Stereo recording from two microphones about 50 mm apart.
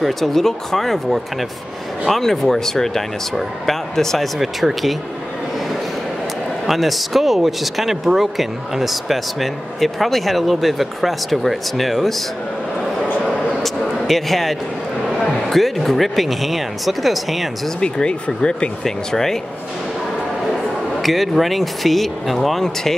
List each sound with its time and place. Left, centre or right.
0.0 s speech: centre
6.7 s speech: centre
13.6 s a sound: centre
15.0 s speech: centre
17.7 s speech: centre
18.9 s speech: centre
21.0 s speech: centre